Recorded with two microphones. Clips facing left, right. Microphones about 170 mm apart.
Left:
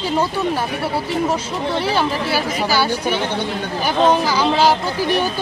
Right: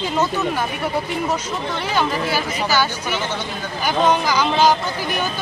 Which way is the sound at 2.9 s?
35° left (ahead or behind).